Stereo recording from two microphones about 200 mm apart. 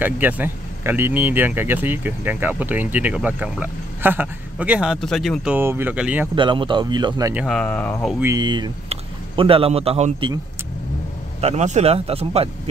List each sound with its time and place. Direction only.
0.0 s speech: 10° right (ahead or behind)
6.3 s speech: 25° right (ahead or behind)
7.3 s speech: centre (ahead or behind)
8.2 s speech: 15° right (ahead or behind)
11.4 s speech: 35° right (ahead or behind)